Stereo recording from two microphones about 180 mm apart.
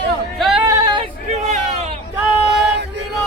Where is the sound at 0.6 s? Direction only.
15° right (ahead or behind).